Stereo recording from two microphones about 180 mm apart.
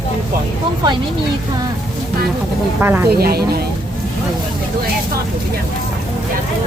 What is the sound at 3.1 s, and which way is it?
Speech, 60° right (ahead or behind).